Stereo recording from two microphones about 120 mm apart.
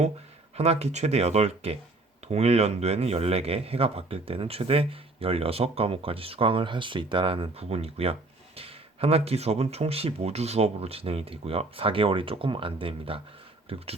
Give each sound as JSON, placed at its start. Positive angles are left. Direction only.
{"t": 0.5, "sound": "a man's voice", "side_deg": -60}